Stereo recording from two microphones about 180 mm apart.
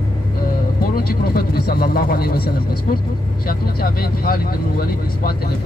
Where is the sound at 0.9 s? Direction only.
55° left (ahead or behind).